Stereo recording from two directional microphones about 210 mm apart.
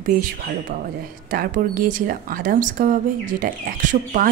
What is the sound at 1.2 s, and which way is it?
Speech, 40° right (ahead or behind).